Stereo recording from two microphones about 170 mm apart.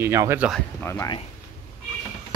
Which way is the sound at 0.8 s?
15° left (ahead or behind).